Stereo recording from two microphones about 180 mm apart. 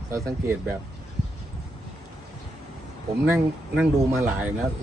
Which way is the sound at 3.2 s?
10° right (ahead or behind).